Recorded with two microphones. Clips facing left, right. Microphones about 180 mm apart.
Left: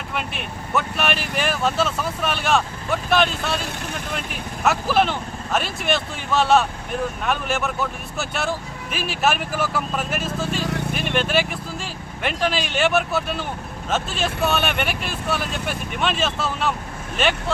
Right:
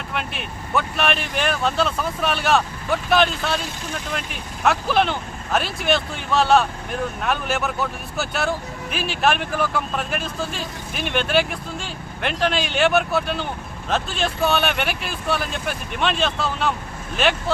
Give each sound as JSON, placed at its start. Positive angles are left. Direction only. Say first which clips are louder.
{"t": 0.1, "sound": "speech", "louder": "left 1 dB", "side_deg": 0}
{"t": 10.6, "sound": "speech", "louder": "left 7 dB", "side_deg": 70}
{"t": 10.9, "sound": "speech", "louder": "right 3 dB", "side_deg": 0}